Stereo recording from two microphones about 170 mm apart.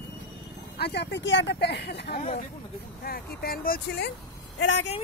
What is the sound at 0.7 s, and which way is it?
Speech, 75° left (ahead or behind).